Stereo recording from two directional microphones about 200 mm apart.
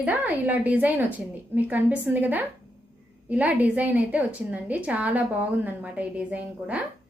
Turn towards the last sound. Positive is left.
turn(degrees=-5)  # may be behind; listen again after turning